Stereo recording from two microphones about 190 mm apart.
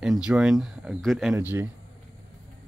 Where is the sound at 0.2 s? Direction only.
5° right (ahead or behind).